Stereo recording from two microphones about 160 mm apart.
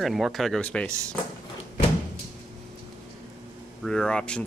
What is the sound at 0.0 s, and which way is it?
Speech, centre (ahead or behind).